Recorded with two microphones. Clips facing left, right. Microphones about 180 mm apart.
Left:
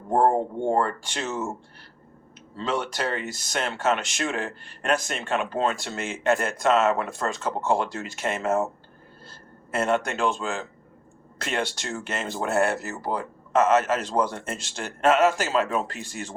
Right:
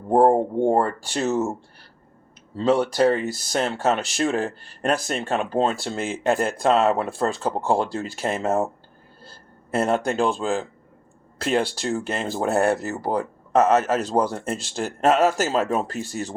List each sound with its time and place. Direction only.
0.1 s a sound: 30° right (ahead or behind)
2.6 s speech: 35° right (ahead or behind)
9.7 s speech: 35° right (ahead or behind)